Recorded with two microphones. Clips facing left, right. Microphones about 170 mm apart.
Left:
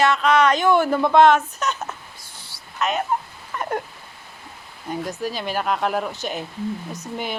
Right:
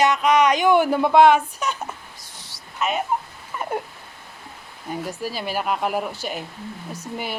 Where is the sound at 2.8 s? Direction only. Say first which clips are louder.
Left 1 dB; 5° right (ahead or behind).